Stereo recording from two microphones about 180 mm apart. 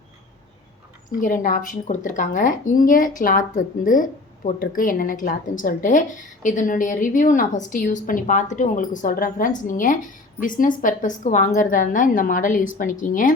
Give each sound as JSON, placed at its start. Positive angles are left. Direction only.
{"t": 1.2, "sound": "a woman's voice", "side_deg": 50}